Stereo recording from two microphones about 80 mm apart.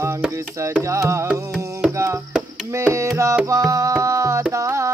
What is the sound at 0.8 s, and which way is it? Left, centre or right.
Music, right.